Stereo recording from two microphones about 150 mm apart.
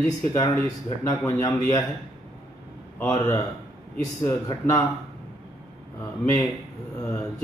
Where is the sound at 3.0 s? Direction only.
20° left (ahead or behind).